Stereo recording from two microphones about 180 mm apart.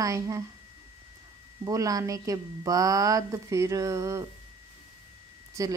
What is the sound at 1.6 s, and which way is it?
A woman's voice, 20° right (ahead or behind).